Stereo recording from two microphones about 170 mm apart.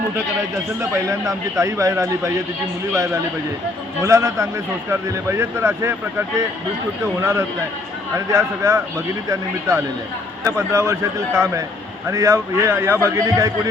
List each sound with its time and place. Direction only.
0.8 s a man's voice: 20° right (ahead or behind)
4.0 s a man's voice: 15° right (ahead or behind)
12.0 s a man's voice: 15° right (ahead or behind)